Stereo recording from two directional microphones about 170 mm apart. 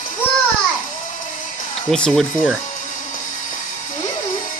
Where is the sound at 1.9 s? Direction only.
5° left (ahead or behind).